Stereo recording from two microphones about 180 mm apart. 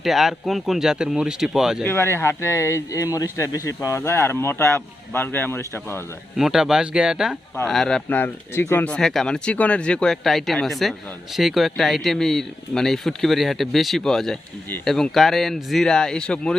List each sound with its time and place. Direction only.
0.0 s speech: centre (ahead or behind)
1.8 s a man's voice: 10° left (ahead or behind)
6.3 s speech: centre (ahead or behind)